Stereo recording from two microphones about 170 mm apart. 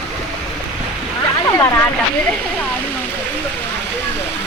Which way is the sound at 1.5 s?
20° left (ahead or behind).